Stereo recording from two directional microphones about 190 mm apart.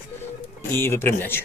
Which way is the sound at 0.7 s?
10° left (ahead or behind).